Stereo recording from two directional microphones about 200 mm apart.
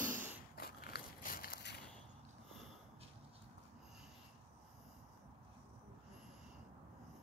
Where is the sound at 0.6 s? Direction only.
50° left (ahead or behind).